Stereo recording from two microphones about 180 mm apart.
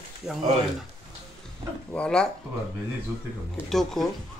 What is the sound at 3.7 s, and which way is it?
Speech, centre (ahead or behind).